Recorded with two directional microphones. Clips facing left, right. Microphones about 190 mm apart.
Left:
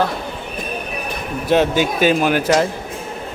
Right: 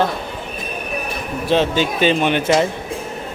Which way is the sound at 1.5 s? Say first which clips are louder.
Left 2 dB; 10° left (ahead or behind).